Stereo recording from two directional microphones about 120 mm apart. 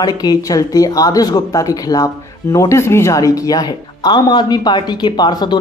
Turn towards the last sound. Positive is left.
turn(degrees=35)  # may be behind; listen again after turning